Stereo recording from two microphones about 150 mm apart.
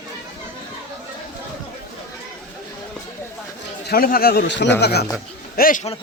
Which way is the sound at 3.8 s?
80° left.